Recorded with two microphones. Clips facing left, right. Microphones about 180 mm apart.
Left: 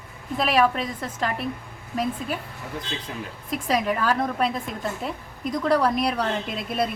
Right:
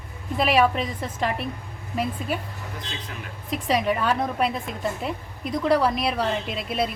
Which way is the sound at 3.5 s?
Centre (ahead or behind).